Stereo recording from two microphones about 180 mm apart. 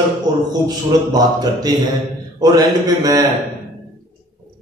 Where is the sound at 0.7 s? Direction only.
20° right (ahead or behind).